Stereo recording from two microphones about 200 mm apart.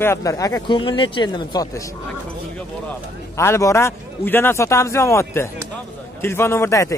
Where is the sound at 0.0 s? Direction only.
15° left (ahead or behind).